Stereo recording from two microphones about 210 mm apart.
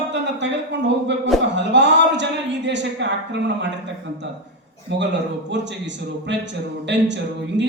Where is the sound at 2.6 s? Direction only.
55° right (ahead or behind).